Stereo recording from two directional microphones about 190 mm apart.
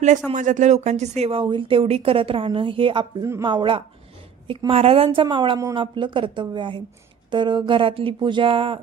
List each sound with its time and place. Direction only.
0.3 s speech: 40° right (ahead or behind)